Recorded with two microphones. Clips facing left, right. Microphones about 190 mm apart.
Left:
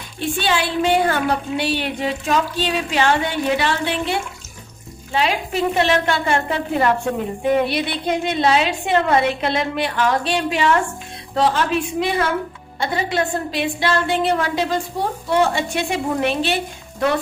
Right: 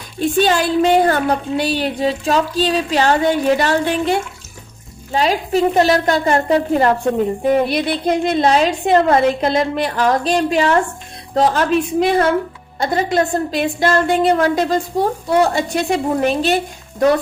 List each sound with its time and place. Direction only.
0.2 s a woman's voice: 40° right (ahead or behind)
5.1 s a woman's voice: 40° right (ahead or behind)